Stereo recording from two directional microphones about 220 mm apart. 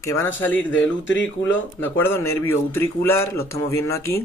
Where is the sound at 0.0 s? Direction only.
10° left (ahead or behind).